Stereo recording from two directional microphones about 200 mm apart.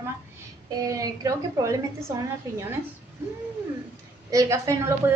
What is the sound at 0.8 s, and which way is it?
A woman's voice, 15° right (ahead or behind).